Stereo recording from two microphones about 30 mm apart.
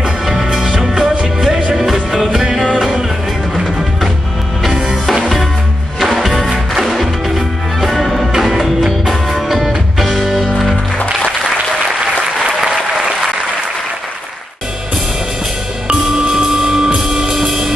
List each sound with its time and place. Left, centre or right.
0.6 s music: centre
2.6 s music: centre
6.0 s music: centre
8.3 s music: centre
16.1 s music: right